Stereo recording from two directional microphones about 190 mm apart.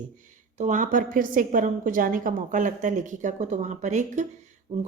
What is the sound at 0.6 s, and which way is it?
A woman's voice, 40° right (ahead or behind).